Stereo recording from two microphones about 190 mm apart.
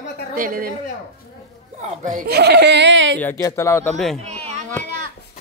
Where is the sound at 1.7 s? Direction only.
40° right (ahead or behind); by 3.1 s 70° right (ahead or behind).